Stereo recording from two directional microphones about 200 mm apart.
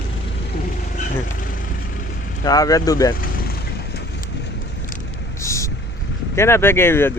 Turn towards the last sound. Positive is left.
turn(degrees=10)  # may be behind; listen again after turning